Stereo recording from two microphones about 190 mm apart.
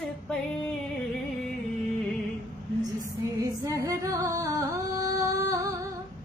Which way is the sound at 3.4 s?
15° right (ahead or behind).